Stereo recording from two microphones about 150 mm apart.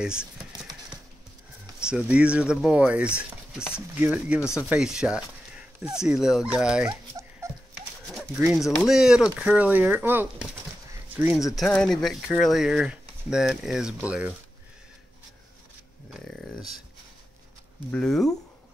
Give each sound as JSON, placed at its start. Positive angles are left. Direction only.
{"t": 0.0, "sound": "speech", "side_deg": -5}
{"t": 1.8, "sound": "speech", "side_deg": -5}
{"t": 4.4, "sound": "speech", "side_deg": 20}
{"t": 4.6, "sound": "speech", "side_deg": -5}
{"t": 6.9, "sound": "dog", "side_deg": -25}
{"t": 8.4, "sound": "speech", "side_deg": -5}
{"t": 16.1, "sound": "a sound", "side_deg": 0}
{"t": 17.9, "sound": "speech", "side_deg": 5}